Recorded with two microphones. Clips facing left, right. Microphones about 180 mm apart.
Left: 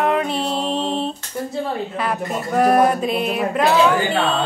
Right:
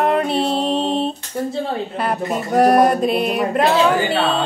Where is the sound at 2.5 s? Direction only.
40° right (ahead or behind).